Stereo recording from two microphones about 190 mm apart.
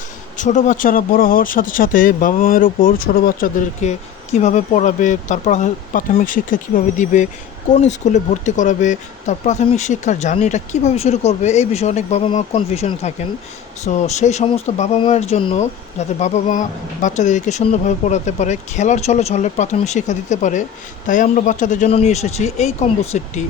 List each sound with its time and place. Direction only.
0.3 s speech: 40° left (ahead or behind)